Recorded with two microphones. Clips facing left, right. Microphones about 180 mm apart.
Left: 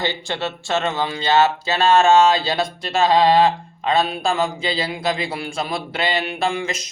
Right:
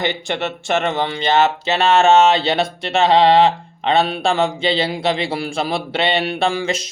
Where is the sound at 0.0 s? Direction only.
20° right (ahead or behind).